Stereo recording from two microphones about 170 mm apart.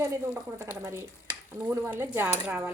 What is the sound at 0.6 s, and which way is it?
A woman's voice, 15° right (ahead or behind).